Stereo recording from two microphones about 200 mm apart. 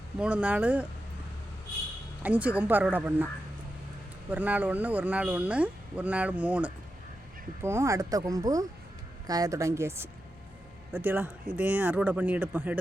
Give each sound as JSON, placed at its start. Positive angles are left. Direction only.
{"t": 0.2, "sound": "speech", "side_deg": -5}
{"t": 2.2, "sound": "speech", "side_deg": -5}
{"t": 4.3, "sound": "speech", "side_deg": -10}